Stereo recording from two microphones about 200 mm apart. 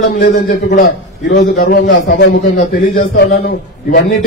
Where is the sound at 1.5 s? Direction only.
45° left (ahead or behind).